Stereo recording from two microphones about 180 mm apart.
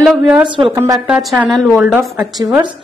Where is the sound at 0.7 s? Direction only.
20° right (ahead or behind).